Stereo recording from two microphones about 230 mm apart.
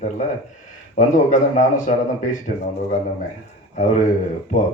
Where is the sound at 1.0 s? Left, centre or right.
Left.